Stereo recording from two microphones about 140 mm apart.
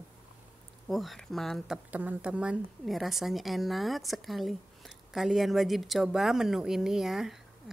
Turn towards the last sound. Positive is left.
turn(degrees=0)  # may be behind; listen again after turning